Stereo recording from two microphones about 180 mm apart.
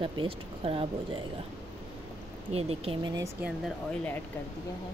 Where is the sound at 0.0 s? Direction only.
30° right (ahead or behind).